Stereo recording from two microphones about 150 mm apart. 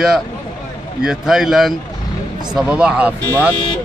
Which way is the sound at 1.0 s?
5° right (ahead or behind).